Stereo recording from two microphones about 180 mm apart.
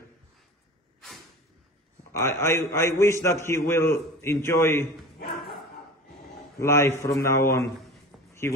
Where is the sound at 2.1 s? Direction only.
15° left (ahead or behind).